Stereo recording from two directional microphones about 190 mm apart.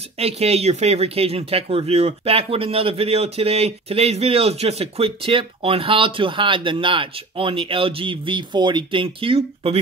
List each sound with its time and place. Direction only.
0.2 s speech: 35° right (ahead or behind)